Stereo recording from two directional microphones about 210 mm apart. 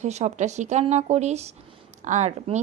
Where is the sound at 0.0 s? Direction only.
30° right (ahead or behind).